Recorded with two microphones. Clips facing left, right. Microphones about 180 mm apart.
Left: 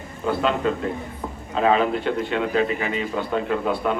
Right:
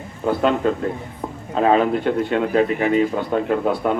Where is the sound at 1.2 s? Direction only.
35° right (ahead or behind).